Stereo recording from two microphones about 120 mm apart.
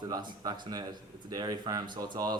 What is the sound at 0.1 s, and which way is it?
Speech, 35° right (ahead or behind).